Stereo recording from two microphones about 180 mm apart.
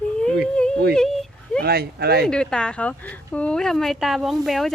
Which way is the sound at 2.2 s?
5° left (ahead or behind).